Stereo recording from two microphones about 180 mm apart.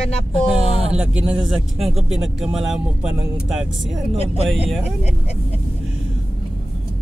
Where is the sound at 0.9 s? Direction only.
5° right (ahead or behind).